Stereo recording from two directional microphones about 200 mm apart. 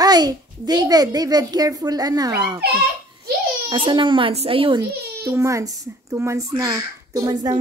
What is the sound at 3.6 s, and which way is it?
A child's voice, 25° right (ahead or behind).